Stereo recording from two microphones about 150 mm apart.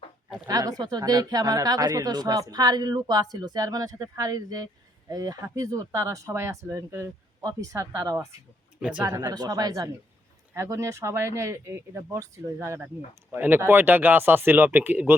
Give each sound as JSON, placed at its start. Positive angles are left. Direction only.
{"t": 0.4, "sound": "a woman's voice", "side_deg": -25}
{"t": 8.8, "sound": "speech", "side_deg": -5}
{"t": 9.0, "sound": "a woman's voice", "side_deg": -25}